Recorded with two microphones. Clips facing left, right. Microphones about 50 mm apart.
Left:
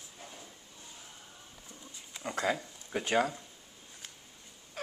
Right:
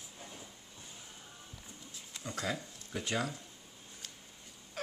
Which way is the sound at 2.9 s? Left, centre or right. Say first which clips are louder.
Left 7 dB; left.